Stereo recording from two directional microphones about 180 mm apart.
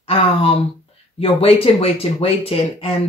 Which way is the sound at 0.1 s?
30° left (ahead or behind).